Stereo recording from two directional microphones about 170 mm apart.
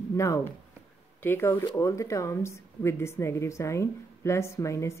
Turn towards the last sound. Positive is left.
turn(degrees=15)  # may be behind; listen again after turning